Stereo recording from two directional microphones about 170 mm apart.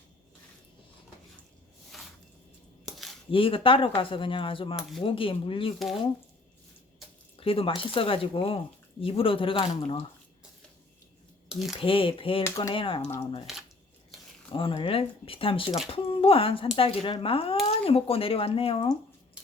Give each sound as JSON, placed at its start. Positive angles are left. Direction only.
{"t": 1.9, "sound": "a sound", "side_deg": 0}
{"t": 3.3, "sound": "speech", "side_deg": 30}
{"t": 4.8, "sound": "speech", "side_deg": 0}
{"t": 5.0, "sound": "speech", "side_deg": 30}
{"t": 7.3, "sound": "speech", "side_deg": 30}
{"t": 11.4, "sound": "speech", "side_deg": 0}
{"t": 11.8, "sound": "speech", "side_deg": 30}
{"t": 12.4, "sound": "speech", "side_deg": 20}
{"t": 12.7, "sound": "speech", "side_deg": 30}
{"t": 13.5, "sound": "speech", "side_deg": 0}
{"t": 14.5, "sound": "speech", "side_deg": 30}